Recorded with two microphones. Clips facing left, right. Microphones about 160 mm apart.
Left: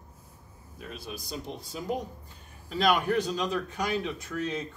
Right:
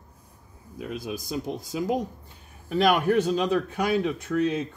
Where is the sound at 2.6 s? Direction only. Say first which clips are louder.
Right 4 dB; 50° right (ahead or behind).